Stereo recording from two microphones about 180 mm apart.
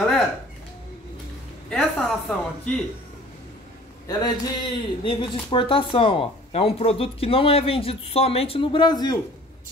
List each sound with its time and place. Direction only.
1.7 s speech: 5° left (ahead or behind)
4.2 s speech: 25° left (ahead or behind)